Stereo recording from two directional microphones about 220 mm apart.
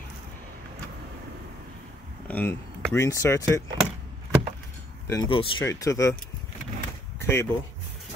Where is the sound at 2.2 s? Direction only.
5° left (ahead or behind).